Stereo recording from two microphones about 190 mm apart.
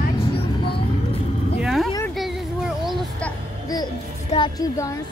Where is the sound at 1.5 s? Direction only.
Centre (ahead or behind).